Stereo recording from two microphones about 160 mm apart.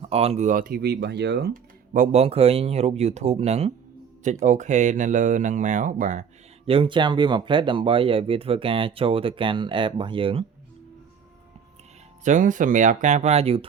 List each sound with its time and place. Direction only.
0.0 s speech: 40° right (ahead or behind); by 2.0 s 90° right
2.0 s speech: 40° right (ahead or behind)
6.7 s speech: 35° right (ahead or behind)
12.2 s speech: 50° right (ahead or behind)